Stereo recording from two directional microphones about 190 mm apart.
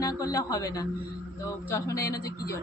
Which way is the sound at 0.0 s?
20° left (ahead or behind).